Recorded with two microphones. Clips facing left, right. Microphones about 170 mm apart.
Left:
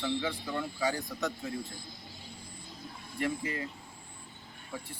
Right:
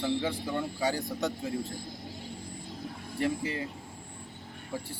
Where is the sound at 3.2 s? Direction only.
25° right (ahead or behind).